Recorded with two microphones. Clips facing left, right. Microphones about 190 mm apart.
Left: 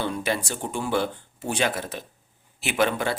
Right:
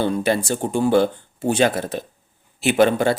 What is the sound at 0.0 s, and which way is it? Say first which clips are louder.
A man's voice: right 7 dB; 35° right (ahead or behind).